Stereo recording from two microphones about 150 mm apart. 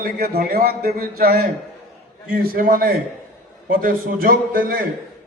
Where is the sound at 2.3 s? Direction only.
75° right (ahead or behind).